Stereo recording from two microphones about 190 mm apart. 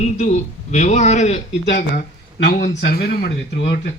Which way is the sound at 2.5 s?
45° left (ahead or behind).